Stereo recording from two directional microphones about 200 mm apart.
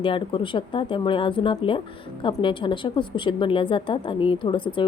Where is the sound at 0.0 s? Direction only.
25° left (ahead or behind).